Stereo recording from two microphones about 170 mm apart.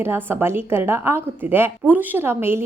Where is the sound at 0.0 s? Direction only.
15° right (ahead or behind).